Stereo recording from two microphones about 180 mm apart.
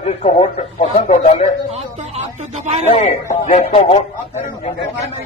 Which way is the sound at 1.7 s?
40° right (ahead or behind).